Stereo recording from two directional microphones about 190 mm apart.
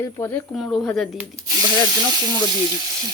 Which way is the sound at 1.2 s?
15° right (ahead or behind).